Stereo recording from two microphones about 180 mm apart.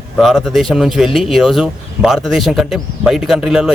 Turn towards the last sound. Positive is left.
turn(degrees=-5)  # may be behind; listen again after turning